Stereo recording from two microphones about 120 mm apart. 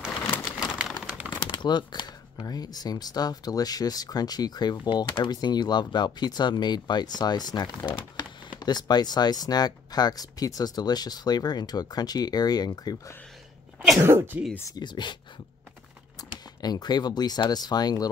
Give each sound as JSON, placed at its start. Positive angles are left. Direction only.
{"t": 0.7, "sound": "crumpling", "side_deg": -10}
{"t": 1.5, "sound": "speech", "side_deg": 40}
{"t": 14.0, "sound": "speech", "side_deg": -20}
{"t": 14.7, "sound": "speech", "side_deg": 40}
{"t": 16.2, "sound": "speech", "side_deg": 35}